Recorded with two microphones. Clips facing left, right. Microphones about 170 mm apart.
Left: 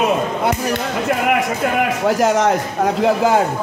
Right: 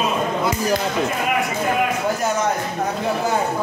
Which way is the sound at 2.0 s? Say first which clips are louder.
Left 6 dB; 90° left.